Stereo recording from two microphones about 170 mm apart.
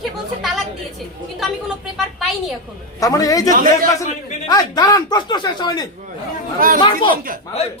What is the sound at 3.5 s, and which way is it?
Speech, 55° right (ahead or behind).